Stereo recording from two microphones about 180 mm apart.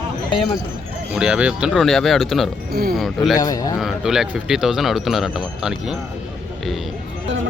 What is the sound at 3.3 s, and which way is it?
Speech, 20° left (ahead or behind).